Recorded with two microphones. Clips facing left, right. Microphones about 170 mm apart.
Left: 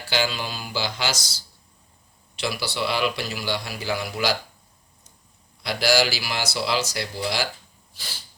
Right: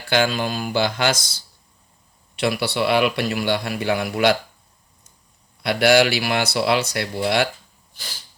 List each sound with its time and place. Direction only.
0.1 s a man's voice: 55° right (ahead or behind)
5.6 s a man's voice: 60° right (ahead or behind)